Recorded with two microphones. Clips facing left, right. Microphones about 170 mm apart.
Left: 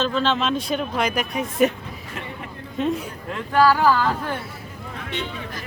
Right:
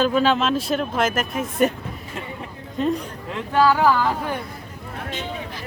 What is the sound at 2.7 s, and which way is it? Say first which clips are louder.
Speech: right 1 dB; centre (ahead or behind).